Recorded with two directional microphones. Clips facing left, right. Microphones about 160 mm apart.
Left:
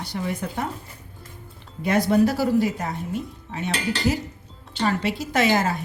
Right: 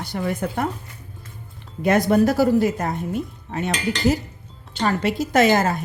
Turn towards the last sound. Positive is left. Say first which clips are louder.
# right 4 dB
turn(degrees=-45)  # may be behind; listen again after turning